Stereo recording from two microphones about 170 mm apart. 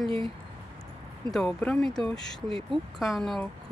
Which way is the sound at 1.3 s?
5° left (ahead or behind).